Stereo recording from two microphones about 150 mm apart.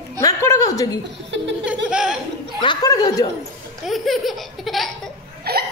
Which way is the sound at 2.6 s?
30° left (ahead or behind).